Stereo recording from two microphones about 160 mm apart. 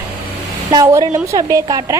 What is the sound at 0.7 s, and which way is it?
A woman's voice, 25° right (ahead or behind).